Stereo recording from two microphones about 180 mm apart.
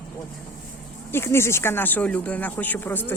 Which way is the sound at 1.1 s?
15° left (ahead or behind).